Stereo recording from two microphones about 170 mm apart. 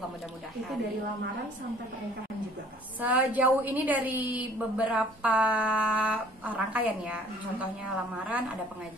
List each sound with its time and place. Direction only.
3.0 s a woman's voice: 10° right (ahead or behind)